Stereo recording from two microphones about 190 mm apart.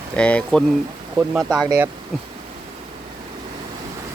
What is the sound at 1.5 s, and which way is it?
Speech, 15° right (ahead or behind).